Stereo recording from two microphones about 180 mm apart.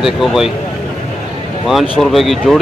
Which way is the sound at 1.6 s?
Centre (ahead or behind).